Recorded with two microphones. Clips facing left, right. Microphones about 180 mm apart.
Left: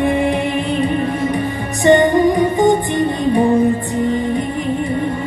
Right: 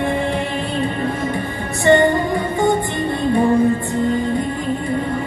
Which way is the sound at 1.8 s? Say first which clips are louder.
Left 3 dB; 15° left (ahead or behind).